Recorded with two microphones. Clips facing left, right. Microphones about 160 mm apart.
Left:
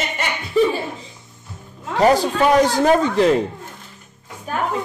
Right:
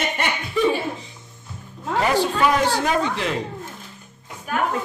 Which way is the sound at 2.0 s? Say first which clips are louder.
Left 5 dB; 40° left (ahead or behind).